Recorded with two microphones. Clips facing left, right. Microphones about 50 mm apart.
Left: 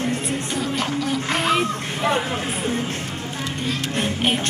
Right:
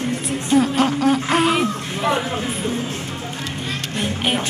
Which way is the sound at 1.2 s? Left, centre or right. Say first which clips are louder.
Right 4 dB; right.